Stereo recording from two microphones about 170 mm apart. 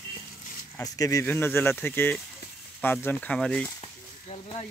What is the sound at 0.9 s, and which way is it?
Speech, 20° left (ahead or behind).